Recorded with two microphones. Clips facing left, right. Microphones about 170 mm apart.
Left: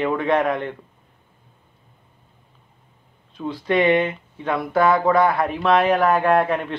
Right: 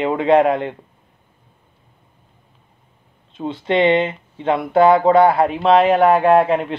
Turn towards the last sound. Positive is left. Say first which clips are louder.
# right 5 dB
turn(degrees=-25)  # may be behind; listen again after turning